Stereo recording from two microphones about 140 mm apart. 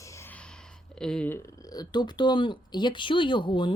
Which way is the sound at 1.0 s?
5° left (ahead or behind).